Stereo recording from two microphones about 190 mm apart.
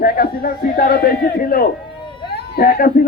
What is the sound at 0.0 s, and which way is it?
A man's voice, 50° left (ahead or behind).